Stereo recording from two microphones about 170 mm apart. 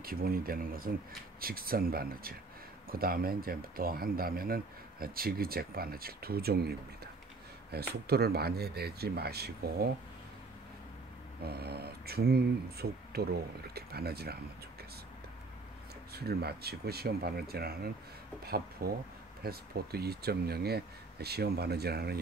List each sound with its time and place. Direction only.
0.0 s speech: 60° right (ahead or behind)
11.4 s speech: 70° right (ahead or behind)
16.1 s speech: 70° right (ahead or behind)